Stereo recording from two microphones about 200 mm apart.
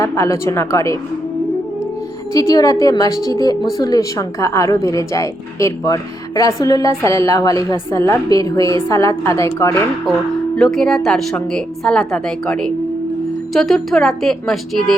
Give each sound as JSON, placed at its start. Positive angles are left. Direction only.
{"t": 0.0, "sound": "a woman's voice", "side_deg": 15}
{"t": 2.3, "sound": "a woman's voice", "side_deg": 15}
{"t": 10.6, "sound": "a woman's voice", "side_deg": 0}